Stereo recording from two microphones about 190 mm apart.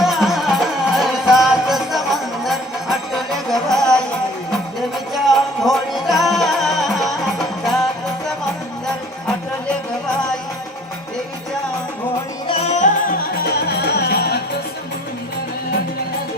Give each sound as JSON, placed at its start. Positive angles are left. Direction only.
{"t": 0.0, "sound": "music", "side_deg": 0}
{"t": 5.3, "sound": "music", "side_deg": 0}
{"t": 12.5, "sound": "music", "side_deg": 35}